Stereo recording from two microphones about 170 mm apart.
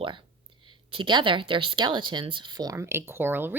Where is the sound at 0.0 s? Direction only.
30° right (ahead or behind).